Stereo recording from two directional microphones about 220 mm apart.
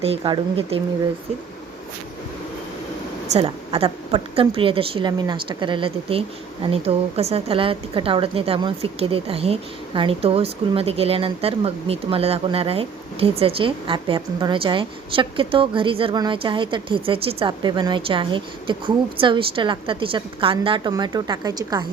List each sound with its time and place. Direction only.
0.0 s a woman's voice: 25° right (ahead or behind)
3.2 s a woman's voice: 30° right (ahead or behind)